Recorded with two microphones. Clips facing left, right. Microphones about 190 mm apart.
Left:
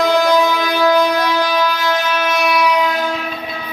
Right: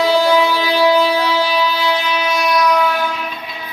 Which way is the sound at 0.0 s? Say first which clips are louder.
Even; 10° right (ahead or behind).